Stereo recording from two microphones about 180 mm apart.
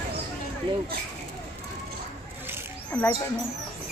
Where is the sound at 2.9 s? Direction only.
5° left (ahead or behind).